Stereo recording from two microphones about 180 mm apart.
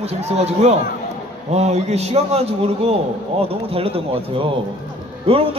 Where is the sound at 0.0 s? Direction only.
35° right (ahead or behind).